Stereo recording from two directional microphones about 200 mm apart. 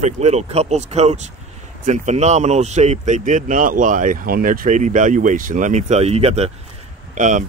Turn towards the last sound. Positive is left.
turn(degrees=-40)  # may be behind; listen again after turning